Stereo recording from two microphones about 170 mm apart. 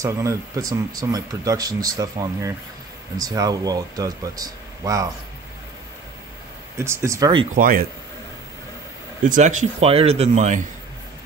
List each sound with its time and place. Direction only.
0.0 s speech: 20° right (ahead or behind)
6.8 s speech: 15° right (ahead or behind)
7.5 s speech: 55° right (ahead or behind)
9.3 s speech: 50° right (ahead or behind)